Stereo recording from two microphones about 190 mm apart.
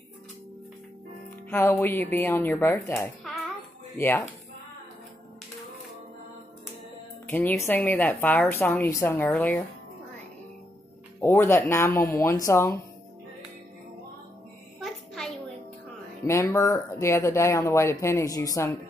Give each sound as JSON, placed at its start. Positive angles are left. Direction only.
{"t": 1.5, "sound": "speech", "side_deg": 10}
{"t": 7.2, "sound": "speech", "side_deg": 10}
{"t": 11.1, "sound": "speech", "side_deg": 10}
{"t": 16.3, "sound": "speech", "side_deg": 15}